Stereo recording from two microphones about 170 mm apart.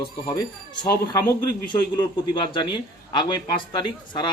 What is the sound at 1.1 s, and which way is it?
A man's voice, 20° left (ahead or behind).